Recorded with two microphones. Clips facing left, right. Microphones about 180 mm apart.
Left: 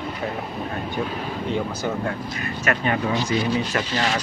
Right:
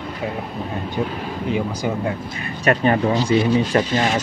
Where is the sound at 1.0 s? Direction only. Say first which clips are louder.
Right 3 dB; 15° right (ahead or behind).